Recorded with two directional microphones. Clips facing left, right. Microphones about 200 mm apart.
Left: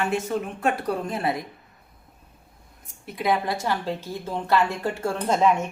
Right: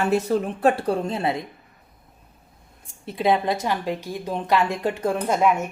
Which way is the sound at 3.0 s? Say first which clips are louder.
Right 3 dB; 25° right (ahead or behind).